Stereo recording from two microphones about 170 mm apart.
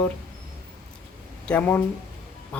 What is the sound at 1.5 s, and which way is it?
Speech, 10° left (ahead or behind).